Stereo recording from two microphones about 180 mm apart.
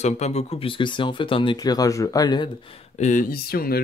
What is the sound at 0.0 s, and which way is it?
Speech, 35° left (ahead or behind).